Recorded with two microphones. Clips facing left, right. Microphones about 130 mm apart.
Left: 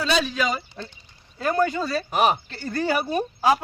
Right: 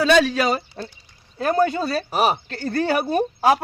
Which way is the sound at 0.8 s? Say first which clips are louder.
Right 4 dB; 45° right (ahead or behind).